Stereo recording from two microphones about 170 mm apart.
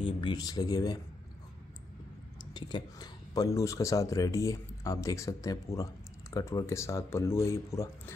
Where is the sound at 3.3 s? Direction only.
20° left (ahead or behind).